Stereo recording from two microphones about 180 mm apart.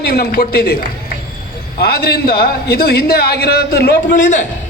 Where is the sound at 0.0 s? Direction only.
60° left (ahead or behind).